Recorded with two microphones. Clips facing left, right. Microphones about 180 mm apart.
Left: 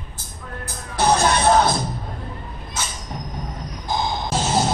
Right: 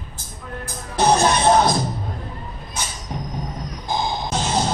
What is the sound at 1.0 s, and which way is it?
Music, 15° right (ahead or behind).